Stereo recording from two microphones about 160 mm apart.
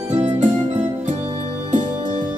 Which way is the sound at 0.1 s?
45° right (ahead or behind).